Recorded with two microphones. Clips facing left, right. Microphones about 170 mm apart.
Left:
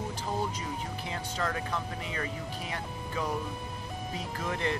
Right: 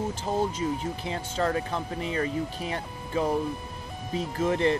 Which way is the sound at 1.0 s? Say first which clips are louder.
Right 6 dB; 30° right (ahead or behind).